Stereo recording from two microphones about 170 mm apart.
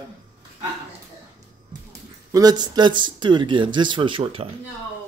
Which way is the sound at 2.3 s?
25° right (ahead or behind).